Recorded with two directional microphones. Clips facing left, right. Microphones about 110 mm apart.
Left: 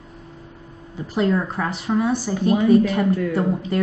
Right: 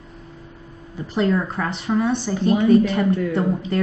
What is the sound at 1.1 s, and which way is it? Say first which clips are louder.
Speech: even; 5° left (ahead or behind).